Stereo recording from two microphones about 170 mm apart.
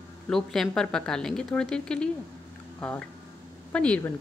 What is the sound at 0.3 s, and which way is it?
A woman's voice, 5° left (ahead or behind).